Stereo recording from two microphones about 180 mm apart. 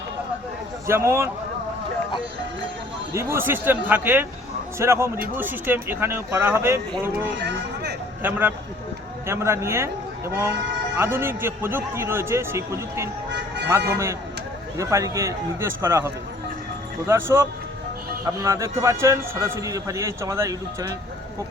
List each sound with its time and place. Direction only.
0.9 s a man's voice: 15° right (ahead or behind)
3.1 s a man's voice: 15° right (ahead or behind)
7.1 s speech: 65° right (ahead or behind)
8.2 s a man's voice: 10° right (ahead or behind)